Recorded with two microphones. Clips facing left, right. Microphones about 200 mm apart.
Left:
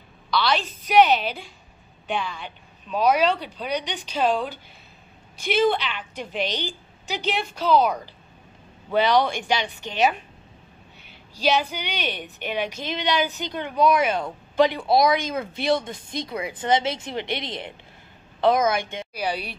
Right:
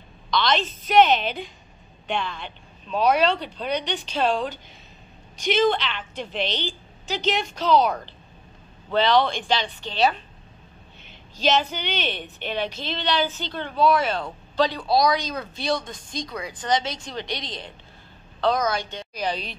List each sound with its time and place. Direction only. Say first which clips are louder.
0.3 s a woman's voice: even; 10° left (ahead or behind)
11.3 s a woman's voice: even; 10° left (ahead or behind)
18.9 s a woman's voice: even; 10° left (ahead or behind)